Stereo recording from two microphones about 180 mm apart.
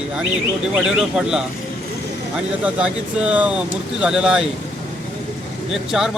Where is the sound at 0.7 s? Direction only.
5° right (ahead or behind).